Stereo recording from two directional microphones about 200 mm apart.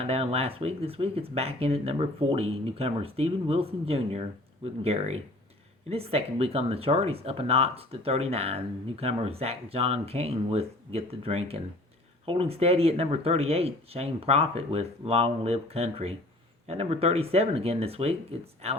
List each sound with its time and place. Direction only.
0.0 s speech: 30° right (ahead or behind)